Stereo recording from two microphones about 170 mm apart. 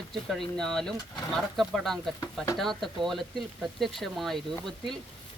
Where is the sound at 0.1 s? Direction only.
Centre (ahead or behind).